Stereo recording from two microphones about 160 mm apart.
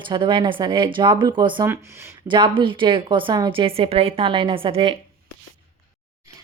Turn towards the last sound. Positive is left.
turn(degrees=-35)  # may be behind; listen again after turning